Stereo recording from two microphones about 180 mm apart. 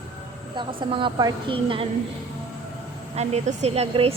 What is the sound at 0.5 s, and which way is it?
A woman's voice, 30° right (ahead or behind).